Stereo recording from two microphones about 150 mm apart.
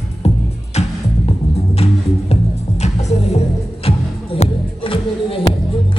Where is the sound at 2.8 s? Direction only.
45° left (ahead or behind).